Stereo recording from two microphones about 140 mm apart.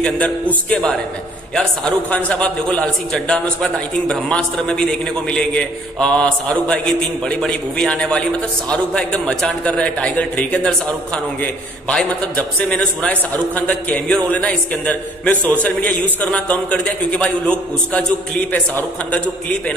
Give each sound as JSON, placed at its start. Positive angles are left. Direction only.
{"t": 0.0, "sound": "a man's voice", "side_deg": 10}
{"t": 11.9, "sound": "a man's voice", "side_deg": 10}